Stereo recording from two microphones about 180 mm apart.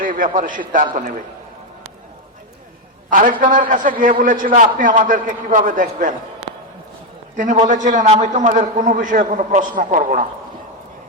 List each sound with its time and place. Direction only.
0.0 s a man's voice: 50° right (ahead or behind)
3.1 s a man's voice: 50° right (ahead or behind)
7.3 s a man's voice: 45° right (ahead or behind)